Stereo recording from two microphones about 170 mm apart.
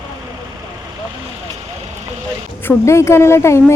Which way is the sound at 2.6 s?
15° left (ahead or behind).